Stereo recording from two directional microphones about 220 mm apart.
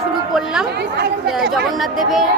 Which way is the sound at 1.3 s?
Centre (ahead or behind).